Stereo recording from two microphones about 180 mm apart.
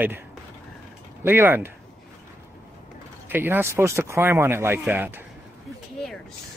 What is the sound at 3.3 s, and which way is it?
Speech, 10° right (ahead or behind).